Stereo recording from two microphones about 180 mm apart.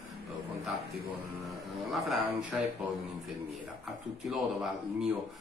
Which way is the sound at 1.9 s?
Centre (ahead or behind).